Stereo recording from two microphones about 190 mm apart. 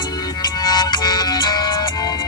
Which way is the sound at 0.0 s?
20° left (ahead or behind).